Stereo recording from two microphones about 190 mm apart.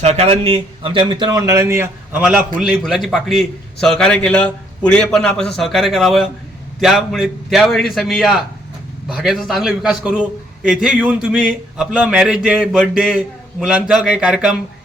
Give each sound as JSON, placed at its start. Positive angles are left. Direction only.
{"t": 0.0, "sound": "a man's voice", "side_deg": -35}